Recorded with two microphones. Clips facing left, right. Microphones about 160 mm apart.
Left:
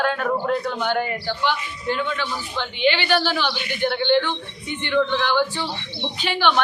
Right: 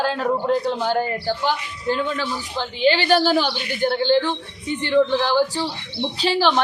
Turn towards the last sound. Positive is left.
turn(degrees=-35)  # may be behind; listen again after turning